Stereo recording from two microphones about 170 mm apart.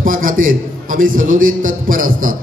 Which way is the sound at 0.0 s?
55° right (ahead or behind).